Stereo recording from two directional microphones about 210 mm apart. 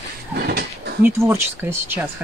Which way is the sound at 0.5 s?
50° right (ahead or behind).